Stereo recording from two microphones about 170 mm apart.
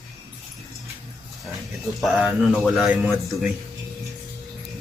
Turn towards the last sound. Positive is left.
turn(degrees=-5)  # may be behind; listen again after turning